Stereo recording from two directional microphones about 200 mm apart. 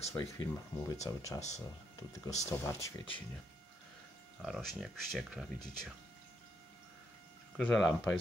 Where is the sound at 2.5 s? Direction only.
10° left (ahead or behind).